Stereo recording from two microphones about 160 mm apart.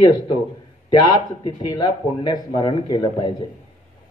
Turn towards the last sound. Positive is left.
turn(degrees=25)  # may be behind; listen again after turning